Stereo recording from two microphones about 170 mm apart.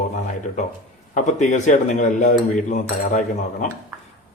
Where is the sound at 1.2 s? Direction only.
45° left (ahead or behind).